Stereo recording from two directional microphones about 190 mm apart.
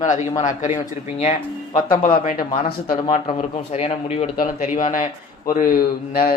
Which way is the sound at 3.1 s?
35° left (ahead or behind).